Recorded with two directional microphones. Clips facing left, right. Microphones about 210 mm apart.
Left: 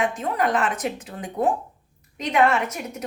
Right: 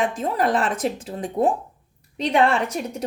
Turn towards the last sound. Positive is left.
turn(degrees=-30)  # may be behind; listen again after turning